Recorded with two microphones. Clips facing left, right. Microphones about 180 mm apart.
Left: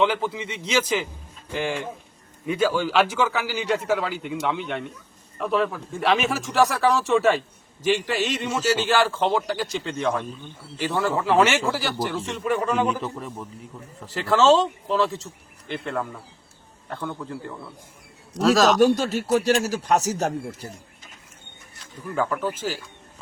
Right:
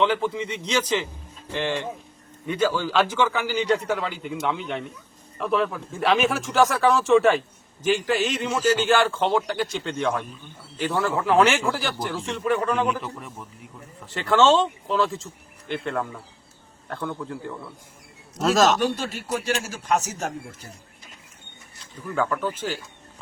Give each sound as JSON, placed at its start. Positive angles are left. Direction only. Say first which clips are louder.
{"t": 0.0, "sound": "a man's voice", "louder": "even", "side_deg": 5}
{"t": 2.5, "sound": "a man's voice", "louder": "left 1 dB", "side_deg": 10}
{"t": 14.1, "sound": "a man's voice", "louder": "left 1 dB", "side_deg": 0}
{"t": 18.8, "sound": "speech", "louder": "left 7 dB", "side_deg": 40}
{"t": 22.0, "sound": "speech", "louder": "even", "side_deg": 5}